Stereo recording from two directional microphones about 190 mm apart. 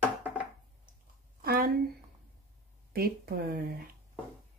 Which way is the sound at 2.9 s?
50° right (ahead or behind).